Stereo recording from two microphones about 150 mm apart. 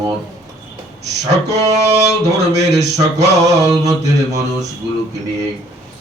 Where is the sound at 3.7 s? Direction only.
20° right (ahead or behind).